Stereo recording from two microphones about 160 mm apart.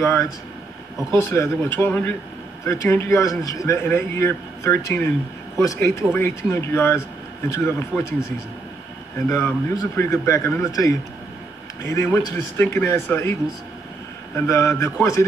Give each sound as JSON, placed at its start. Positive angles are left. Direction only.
{"t": 0.0, "sound": "speech", "side_deg": 20}
{"t": 9.3, "sound": "speech", "side_deg": 20}